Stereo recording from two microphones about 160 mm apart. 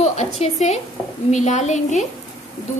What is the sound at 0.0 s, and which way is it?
A woman's voice, 45° left (ahead or behind).